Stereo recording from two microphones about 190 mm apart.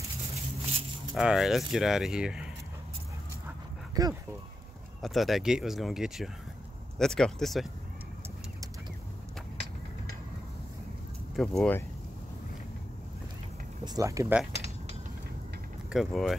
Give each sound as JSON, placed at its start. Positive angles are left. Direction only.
{"t": 1.1, "sound": "speech", "side_deg": 0}
{"t": 4.0, "sound": "speech", "side_deg": -20}
{"t": 5.0, "sound": "speech", "side_deg": 0}
{"t": 11.3, "sound": "speech", "side_deg": 5}
{"t": 13.8, "sound": "speech", "side_deg": -20}
{"t": 15.9, "sound": "speech", "side_deg": 0}